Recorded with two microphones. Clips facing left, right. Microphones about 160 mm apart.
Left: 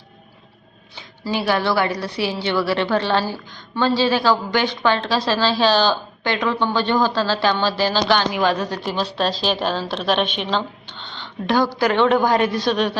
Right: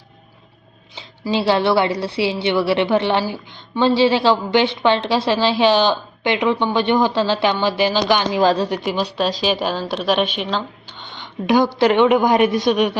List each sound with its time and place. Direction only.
0.9 s a woman's voice: 25° right (ahead or behind)
8.3 s a woman's voice: 35° right (ahead or behind)
8.8 s a woman's voice: 15° right (ahead or behind)